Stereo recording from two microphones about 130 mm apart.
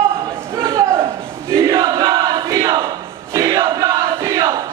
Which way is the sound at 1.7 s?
30° right (ahead or behind).